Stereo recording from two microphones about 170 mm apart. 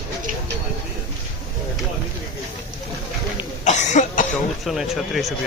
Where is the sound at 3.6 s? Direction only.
45° left (ahead or behind).